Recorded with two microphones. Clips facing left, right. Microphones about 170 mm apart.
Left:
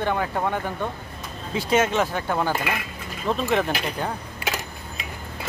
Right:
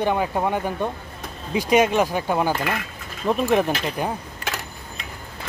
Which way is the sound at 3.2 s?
15° right (ahead or behind).